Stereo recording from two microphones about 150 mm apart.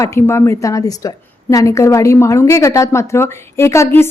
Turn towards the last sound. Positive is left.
turn(degrees=15)  # may be behind; listen again after turning